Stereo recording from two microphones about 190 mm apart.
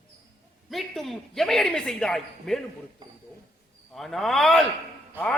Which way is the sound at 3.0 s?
25° right (ahead or behind).